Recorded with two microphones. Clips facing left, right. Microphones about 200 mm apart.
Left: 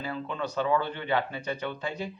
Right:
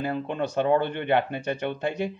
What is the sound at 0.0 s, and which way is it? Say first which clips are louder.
Speech: right 5 dB; 55° right (ahead or behind).